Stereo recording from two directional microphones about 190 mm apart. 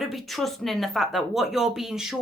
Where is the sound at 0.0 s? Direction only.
Centre (ahead or behind).